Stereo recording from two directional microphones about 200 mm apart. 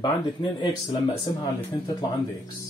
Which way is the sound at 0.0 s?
20° left (ahead or behind).